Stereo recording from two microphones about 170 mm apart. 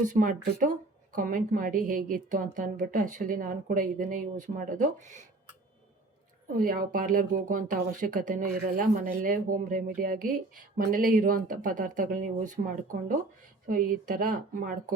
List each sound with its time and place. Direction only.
0.0 s speech: 50° right (ahead or behind)
6.6 s speech: 55° right (ahead or behind)